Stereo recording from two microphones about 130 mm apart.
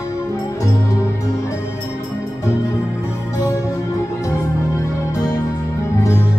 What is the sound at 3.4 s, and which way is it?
Music, 25° left (ahead or behind).